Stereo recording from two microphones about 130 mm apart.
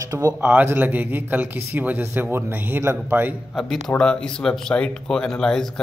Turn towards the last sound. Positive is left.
turn(degrees=5)  # may be behind; listen again after turning